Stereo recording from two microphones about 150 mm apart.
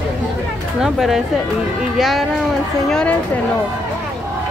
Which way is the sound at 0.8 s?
Centre (ahead or behind).